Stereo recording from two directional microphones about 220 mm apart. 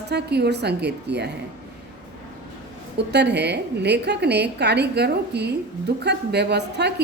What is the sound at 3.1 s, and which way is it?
A woman's voice, 50° right (ahead or behind).